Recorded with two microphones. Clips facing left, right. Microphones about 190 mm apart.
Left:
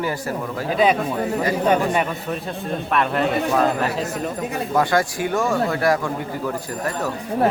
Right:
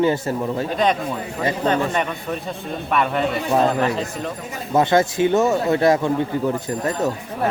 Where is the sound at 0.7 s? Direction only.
5° left (ahead or behind).